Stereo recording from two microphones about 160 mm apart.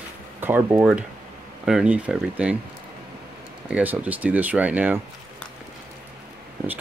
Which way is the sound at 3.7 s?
10° right (ahead or behind).